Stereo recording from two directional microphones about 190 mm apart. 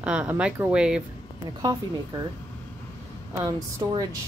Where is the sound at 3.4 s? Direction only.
20° right (ahead or behind).